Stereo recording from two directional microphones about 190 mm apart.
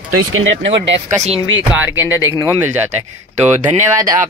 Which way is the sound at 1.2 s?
30° right (ahead or behind).